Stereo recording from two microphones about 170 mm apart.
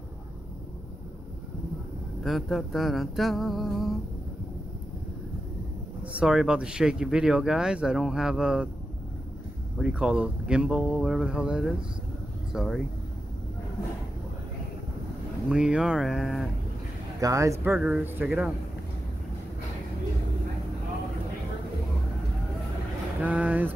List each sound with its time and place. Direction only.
2.2 s speech: centre (ahead or behind)
6.1 s speech: 5° right (ahead or behind)
9.8 s speech: 5° right (ahead or behind)
15.4 s speech: 5° right (ahead or behind)
17.2 s speech: 20° right (ahead or behind)
23.2 s speech: 10° right (ahead or behind)